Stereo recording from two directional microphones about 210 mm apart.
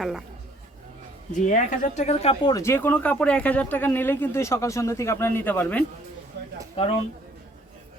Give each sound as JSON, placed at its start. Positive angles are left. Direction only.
{"t": 0.0, "sound": "speech", "side_deg": 0}
{"t": 1.3, "sound": "speech", "side_deg": 40}
{"t": 2.4, "sound": "speech", "side_deg": 15}